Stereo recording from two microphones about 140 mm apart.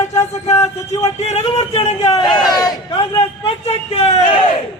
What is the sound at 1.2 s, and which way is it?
A man's voice, 50° left (ahead or behind).